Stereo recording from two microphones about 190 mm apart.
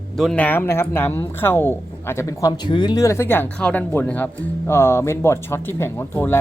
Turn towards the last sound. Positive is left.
turn(degrees=10)  # may be behind; listen again after turning